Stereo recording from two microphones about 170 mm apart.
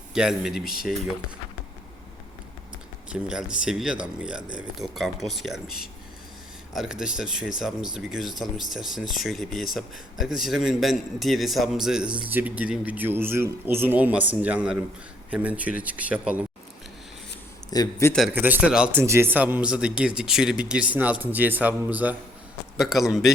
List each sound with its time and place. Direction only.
0.1 s speech: 5° right (ahead or behind)
3.1 s speech: 5° right (ahead or behind)
6.7 s speech: 5° right (ahead or behind)
17.7 s a man's voice: 20° left (ahead or behind)
18.1 s speech: centre (ahead or behind)
18.3 s speech: 10° right (ahead or behind)